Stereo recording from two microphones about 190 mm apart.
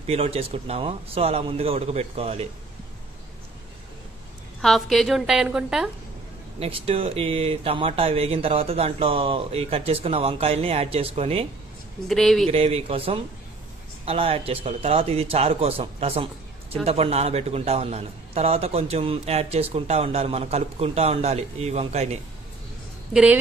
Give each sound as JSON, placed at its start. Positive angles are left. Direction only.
{"t": 0.0, "sound": "a man's voice", "side_deg": -30}
{"t": 4.6, "sound": "a woman's voice", "side_deg": 0}
{"t": 6.6, "sound": "a man's voice", "side_deg": -30}
{"t": 12.1, "sound": "a woman's voice", "side_deg": 0}
{"t": 12.4, "sound": "a man's voice", "side_deg": -35}